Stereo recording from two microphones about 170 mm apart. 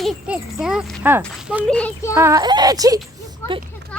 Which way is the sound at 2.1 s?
15° right (ahead or behind).